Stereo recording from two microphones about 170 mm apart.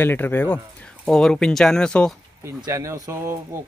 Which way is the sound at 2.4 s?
20° right (ahead or behind).